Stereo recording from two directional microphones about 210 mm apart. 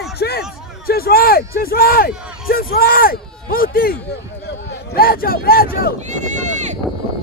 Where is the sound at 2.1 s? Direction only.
5° right (ahead or behind).